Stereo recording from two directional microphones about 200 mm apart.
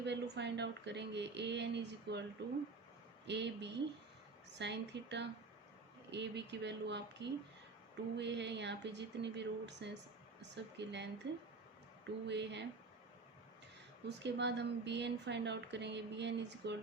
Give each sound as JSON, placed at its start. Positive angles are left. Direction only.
{"t": 0.0, "sound": "speech", "side_deg": -60}
{"t": 3.2, "sound": "speech", "side_deg": -60}
{"t": 14.1, "sound": "speech", "side_deg": -60}